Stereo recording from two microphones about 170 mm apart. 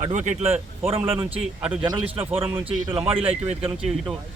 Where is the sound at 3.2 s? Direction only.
10° right (ahead or behind).